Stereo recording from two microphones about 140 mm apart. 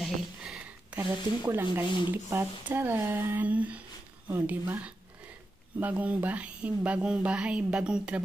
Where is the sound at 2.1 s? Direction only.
15° right (ahead or behind).